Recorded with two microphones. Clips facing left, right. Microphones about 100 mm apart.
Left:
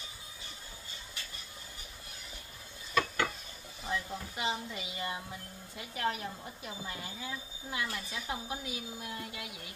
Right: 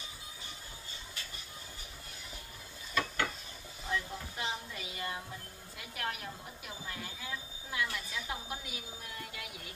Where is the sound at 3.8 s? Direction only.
20° left (ahead or behind).